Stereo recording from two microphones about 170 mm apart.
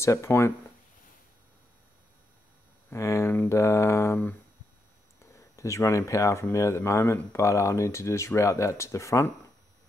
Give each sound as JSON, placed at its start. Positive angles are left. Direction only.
{"t": 0.0, "sound": "speech", "side_deg": 15}
{"t": 2.9, "sound": "speech", "side_deg": 15}